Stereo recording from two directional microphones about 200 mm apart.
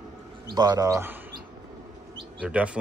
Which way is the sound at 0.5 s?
20° right (ahead or behind).